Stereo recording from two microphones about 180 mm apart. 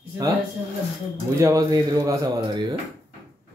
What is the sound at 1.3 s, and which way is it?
Speech, 15° right (ahead or behind).